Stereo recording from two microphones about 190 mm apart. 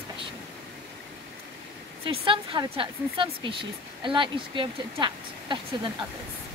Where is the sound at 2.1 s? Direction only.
25° right (ahead or behind).